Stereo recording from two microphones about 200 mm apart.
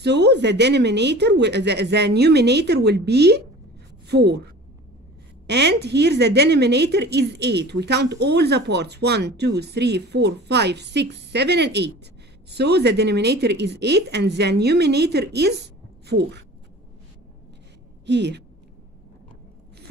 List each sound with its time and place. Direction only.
0.0 s a woman's voice: 60° right (ahead or behind)
5.5 s a woman's voice: 55° right (ahead or behind)
18.0 s a woman's voice: 60° right (ahead or behind)